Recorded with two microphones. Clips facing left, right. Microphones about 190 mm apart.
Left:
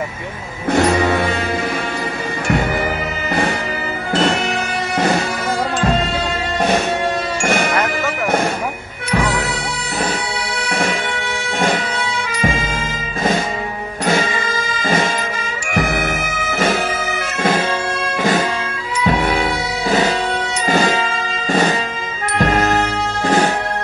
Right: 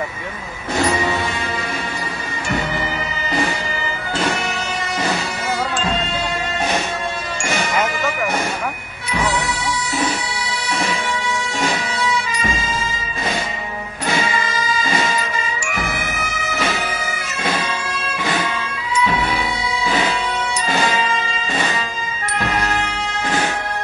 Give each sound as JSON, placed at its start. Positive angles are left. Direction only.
{"t": 0.7, "sound": "music", "side_deg": 60}
{"t": 4.1, "sound": "music", "side_deg": 60}
{"t": 7.4, "sound": "music", "side_deg": 55}
{"t": 10.6, "sound": "bagpipes", "side_deg": 55}
{"t": 11.6, "sound": "music", "side_deg": 50}
{"t": 14.0, "sound": "music", "side_deg": 50}